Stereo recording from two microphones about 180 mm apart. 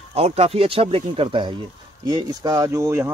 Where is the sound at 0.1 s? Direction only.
35° right (ahead or behind).